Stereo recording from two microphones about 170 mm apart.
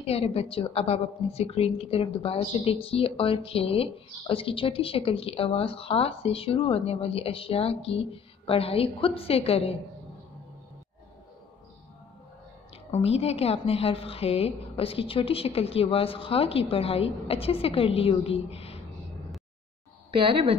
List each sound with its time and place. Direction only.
0.0 s a woman's voice: 35° left (ahead or behind)
12.9 s a woman's voice: 35° left (ahead or behind)
20.2 s speech: 30° right (ahead or behind)